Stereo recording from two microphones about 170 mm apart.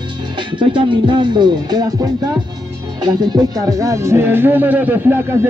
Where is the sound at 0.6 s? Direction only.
30° right (ahead or behind).